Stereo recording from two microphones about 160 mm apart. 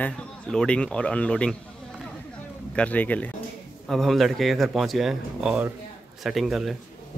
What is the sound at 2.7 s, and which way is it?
Speech, 10° left (ahead or behind).